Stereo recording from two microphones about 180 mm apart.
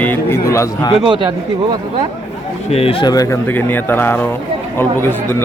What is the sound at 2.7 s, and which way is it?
Speech, 35° left (ahead or behind).